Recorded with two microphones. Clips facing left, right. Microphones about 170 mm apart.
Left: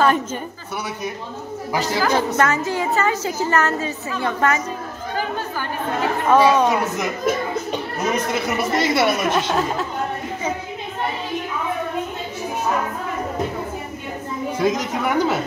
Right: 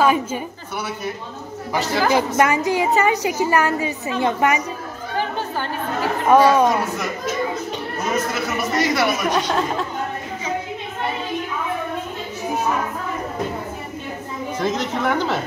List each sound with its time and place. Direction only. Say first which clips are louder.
0.0 s a woman's voice: right 1 dB; 10° right (ahead or behind)
2.0 s a woman's voice: right 2 dB; 15° right (ahead or behind)
6.2 s a woman's voice: right 2 dB; 10° right (ahead or behind)
8.7 s speech: left 1 dB; 25° left (ahead or behind)
9.1 s speech: even; centre (ahead or behind)
14.6 s speech: left 1 dB; 10° left (ahead or behind)